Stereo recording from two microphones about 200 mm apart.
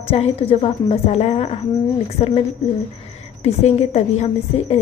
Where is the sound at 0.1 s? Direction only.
30° left (ahead or behind).